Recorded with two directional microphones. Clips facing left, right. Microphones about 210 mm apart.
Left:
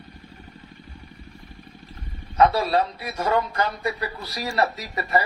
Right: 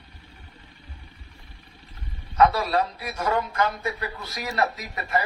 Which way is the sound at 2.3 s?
30° left (ahead or behind).